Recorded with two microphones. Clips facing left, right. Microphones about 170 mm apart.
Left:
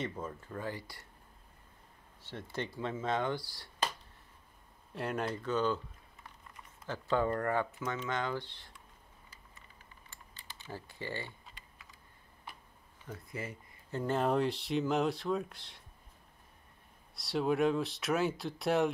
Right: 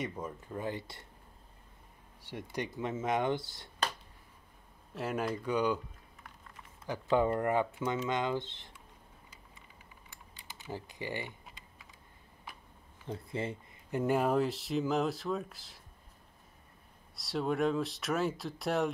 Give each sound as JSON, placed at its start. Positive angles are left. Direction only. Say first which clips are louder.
{"t": 0.0, "sound": "speech", "louder": "even", "side_deg": -10}
{"t": 2.2, "sound": "speech", "louder": "right 1 dB", "side_deg": -15}
{"t": 4.9, "sound": "speech", "louder": "right 1 dB", "side_deg": -5}
{"t": 6.9, "sound": "speech", "louder": "right 3 dB", "side_deg": -15}
{"t": 10.7, "sound": "speech", "louder": "right 2 dB", "side_deg": -15}
{"t": 13.0, "sound": "a sound", "louder": "right 5 dB", "side_deg": -25}
{"t": 13.9, "sound": "speech", "louder": "right 2 dB", "side_deg": -10}
{"t": 17.1, "sound": "speech", "louder": "left 2 dB", "side_deg": 0}